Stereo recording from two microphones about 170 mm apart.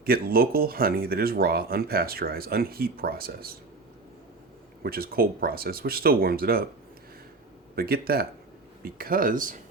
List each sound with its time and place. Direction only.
0.0 s speech: 60° right (ahead or behind)
4.8 s speech: 60° right (ahead or behind)
7.8 s speech: 60° right (ahead or behind)